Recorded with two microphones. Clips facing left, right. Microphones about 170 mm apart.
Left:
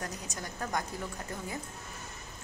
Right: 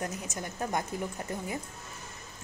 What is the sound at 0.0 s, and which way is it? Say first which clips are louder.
Speech: right 4 dB; 20° right (ahead or behind).